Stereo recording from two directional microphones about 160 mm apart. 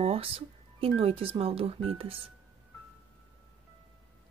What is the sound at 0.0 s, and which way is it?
Music, 40° right (ahead or behind).